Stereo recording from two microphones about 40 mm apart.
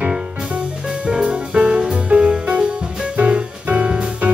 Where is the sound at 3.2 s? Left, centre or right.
Right.